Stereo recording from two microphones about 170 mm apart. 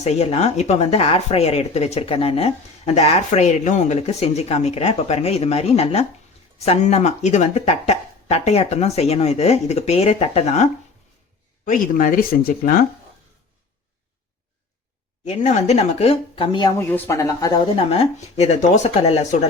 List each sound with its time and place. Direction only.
0.0 s speech: 40° left (ahead or behind)
11.6 s speech: 50° left (ahead or behind)
15.2 s speech: 45° left (ahead or behind); by 16.7 s 25° left (ahead or behind)
16.7 s speech: 15° left (ahead or behind)
17.7 s speech: 35° left (ahead or behind)